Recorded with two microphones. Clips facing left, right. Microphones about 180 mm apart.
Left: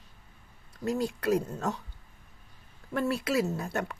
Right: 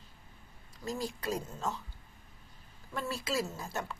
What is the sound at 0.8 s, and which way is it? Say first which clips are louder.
Speech: left 8 dB; 65° left (ahead or behind).